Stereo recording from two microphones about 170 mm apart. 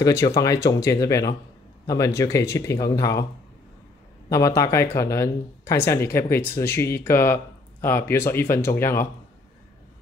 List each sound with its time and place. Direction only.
0.0 s speech: 20° left (ahead or behind)
4.3 s speech: 20° left (ahead or behind)